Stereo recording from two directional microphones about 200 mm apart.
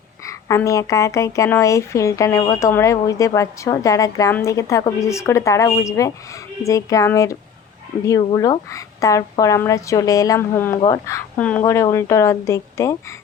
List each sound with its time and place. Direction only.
0.3 s speech: 15° left (ahead or behind)